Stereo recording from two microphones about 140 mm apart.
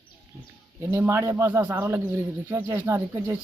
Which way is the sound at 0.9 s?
20° right (ahead or behind).